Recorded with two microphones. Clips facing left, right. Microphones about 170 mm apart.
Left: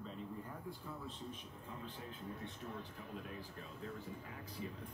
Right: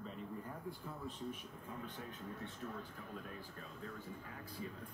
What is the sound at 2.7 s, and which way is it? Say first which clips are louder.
Speech: even; 45° right (ahead or behind).